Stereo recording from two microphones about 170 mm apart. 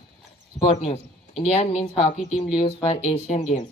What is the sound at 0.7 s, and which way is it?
A woman's voice, 40° left (ahead or behind).